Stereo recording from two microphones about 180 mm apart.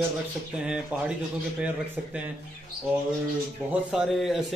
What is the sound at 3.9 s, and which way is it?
Speech, centre (ahead or behind).